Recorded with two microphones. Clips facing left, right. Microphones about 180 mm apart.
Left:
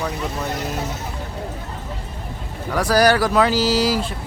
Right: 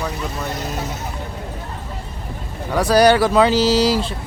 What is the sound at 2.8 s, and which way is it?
Speech, 25° right (ahead or behind).